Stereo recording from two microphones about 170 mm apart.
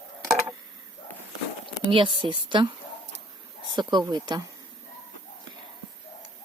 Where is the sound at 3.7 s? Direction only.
25° right (ahead or behind).